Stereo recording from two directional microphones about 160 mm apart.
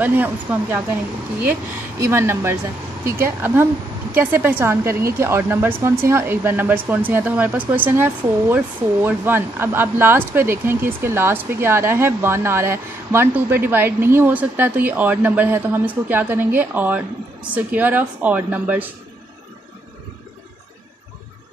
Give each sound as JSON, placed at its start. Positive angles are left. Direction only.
{"t": 0.0, "sound": "speech", "side_deg": -10}
{"t": 2.0, "sound": "speech", "side_deg": -15}